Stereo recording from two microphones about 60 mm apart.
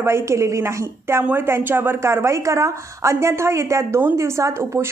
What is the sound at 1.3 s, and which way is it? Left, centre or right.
A woman's voice, right.